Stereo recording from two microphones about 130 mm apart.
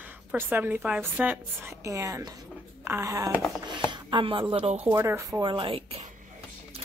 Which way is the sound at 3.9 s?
40° right (ahead or behind).